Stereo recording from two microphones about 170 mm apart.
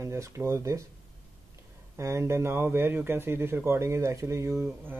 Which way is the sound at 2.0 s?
15° right (ahead or behind).